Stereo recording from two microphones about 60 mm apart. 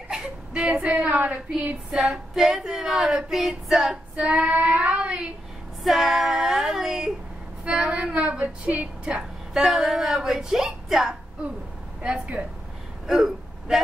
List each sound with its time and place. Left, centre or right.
0.1 s a woman's voice: centre
2.0 s female singing: centre
5.9 s female singing: centre
7.6 s a woman's voice: centre
9.6 s female singing: centre
12.0 s a woman's voice: centre
13.0 s a sound: centre